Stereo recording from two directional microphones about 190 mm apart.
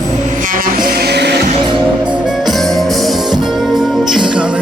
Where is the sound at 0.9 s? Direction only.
55° right (ahead or behind).